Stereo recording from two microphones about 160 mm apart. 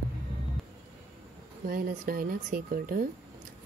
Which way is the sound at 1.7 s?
65° right (ahead or behind).